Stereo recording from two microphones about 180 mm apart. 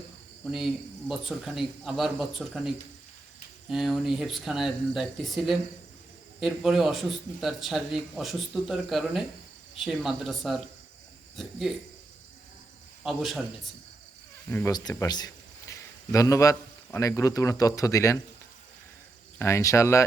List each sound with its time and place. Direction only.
0.5 s a man's voice: centre (ahead or behind)
13.0 s a man's voice: centre (ahead or behind)
14.5 s a man's voice: 20° left (ahead or behind)
19.4 s speech: 15° left (ahead or behind)